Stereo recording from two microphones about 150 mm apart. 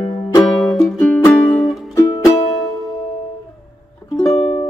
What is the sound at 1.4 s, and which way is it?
Music, centre (ahead or behind).